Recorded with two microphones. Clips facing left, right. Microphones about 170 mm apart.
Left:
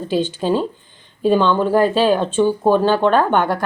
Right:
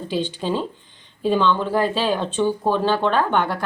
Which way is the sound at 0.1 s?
45° left (ahead or behind).